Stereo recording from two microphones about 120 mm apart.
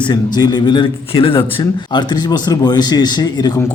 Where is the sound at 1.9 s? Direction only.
35° left (ahead or behind).